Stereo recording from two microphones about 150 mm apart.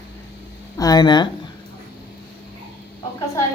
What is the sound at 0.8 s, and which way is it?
Speech, 25° left (ahead or behind).